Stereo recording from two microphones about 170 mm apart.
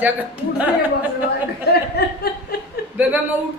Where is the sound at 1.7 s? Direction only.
70° left (ahead or behind).